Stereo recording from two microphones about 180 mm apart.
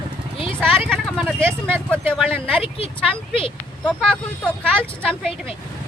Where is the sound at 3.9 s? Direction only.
5° left (ahead or behind).